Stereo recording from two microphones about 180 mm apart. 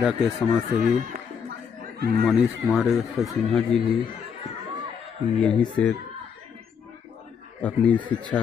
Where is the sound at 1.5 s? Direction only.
60° right (ahead or behind).